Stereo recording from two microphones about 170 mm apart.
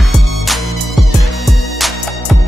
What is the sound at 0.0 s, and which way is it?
Music, centre (ahead or behind).